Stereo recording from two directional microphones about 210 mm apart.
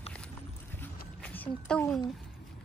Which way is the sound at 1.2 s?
5° left (ahead or behind).